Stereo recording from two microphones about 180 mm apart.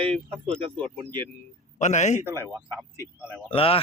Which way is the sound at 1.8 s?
40° left (ahead or behind).